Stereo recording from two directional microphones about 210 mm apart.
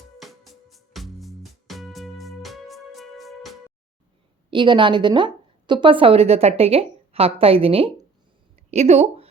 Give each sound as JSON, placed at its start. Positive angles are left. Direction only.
{"t": 0.2, "sound": "music", "side_deg": 0}
{"t": 4.5, "sound": "a woman's voice", "side_deg": -20}
{"t": 8.5, "sound": "a sound", "side_deg": -30}